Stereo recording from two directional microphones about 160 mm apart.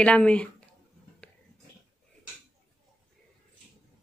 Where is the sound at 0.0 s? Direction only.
5° left (ahead or behind).